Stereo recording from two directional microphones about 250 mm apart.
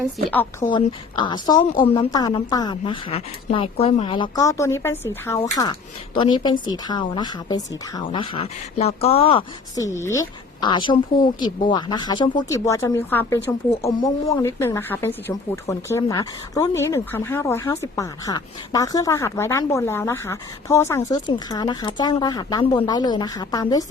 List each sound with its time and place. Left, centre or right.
0.0 s speech: centre
0.7 s speech: centre